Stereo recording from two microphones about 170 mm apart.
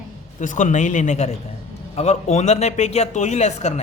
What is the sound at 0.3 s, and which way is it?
A man's voice, 45° left (ahead or behind).